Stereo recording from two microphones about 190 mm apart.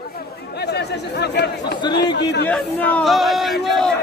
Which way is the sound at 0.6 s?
60° left (ahead or behind).